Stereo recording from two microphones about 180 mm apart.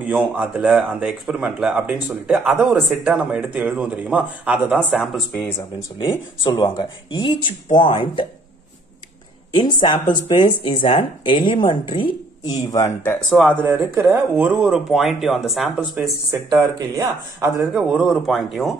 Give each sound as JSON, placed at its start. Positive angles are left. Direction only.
{"t": 0.0, "sound": "speech", "side_deg": -10}
{"t": 5.6, "sound": "speech", "side_deg": 25}
{"t": 9.6, "sound": "speech", "side_deg": 25}
{"t": 13.3, "sound": "speech", "side_deg": -5}
{"t": 16.3, "sound": "speech", "side_deg": -20}
{"t": 17.7, "sound": "speech", "side_deg": -5}